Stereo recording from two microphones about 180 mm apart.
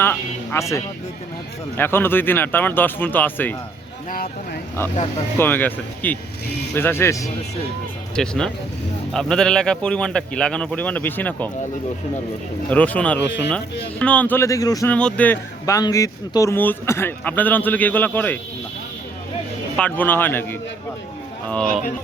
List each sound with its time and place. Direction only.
0.0 s speech: 10° left (ahead or behind)
4.1 s speech: 55° left (ahead or behind)
5.4 s speech: 10° left (ahead or behind)
8.1 s a man's voice: 5° left (ahead or behind)
12.7 s speech: 10° left (ahead or behind)
14.9 s speech: 5° left (ahead or behind)
19.7 s speech: 10° left (ahead or behind)